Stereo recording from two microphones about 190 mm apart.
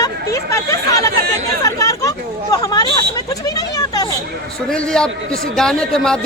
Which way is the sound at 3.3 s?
20° left (ahead or behind).